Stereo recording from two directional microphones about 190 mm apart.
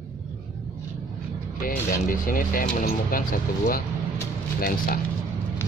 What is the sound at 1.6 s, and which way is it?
Speech, 45° left (ahead or behind).